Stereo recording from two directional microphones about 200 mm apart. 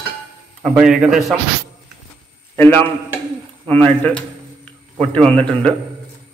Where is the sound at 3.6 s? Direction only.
5° left (ahead or behind).